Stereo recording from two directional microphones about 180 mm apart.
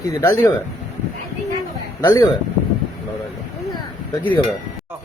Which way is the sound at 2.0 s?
15° left (ahead or behind).